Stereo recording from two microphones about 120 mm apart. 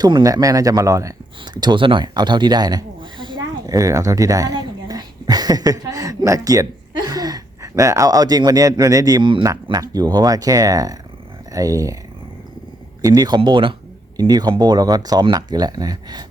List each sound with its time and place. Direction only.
0.0 s speech: 30° right (ahead or behind)
3.7 s speech: 25° right (ahead or behind)
13.0 s speech: 30° right (ahead or behind)
14.2 s speech: 30° right (ahead or behind)